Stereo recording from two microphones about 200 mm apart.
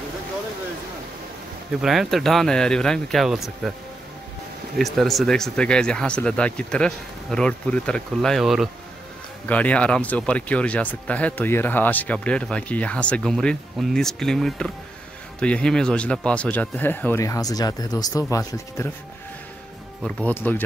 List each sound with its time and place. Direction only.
1.8 s speech: centre (ahead or behind)
4.7 s speech: centre (ahead or behind); by 18.9 s 15° left (ahead or behind)
20.0 s speech: 5° left (ahead or behind)